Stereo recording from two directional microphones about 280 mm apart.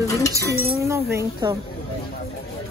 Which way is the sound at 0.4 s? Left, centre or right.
Centre.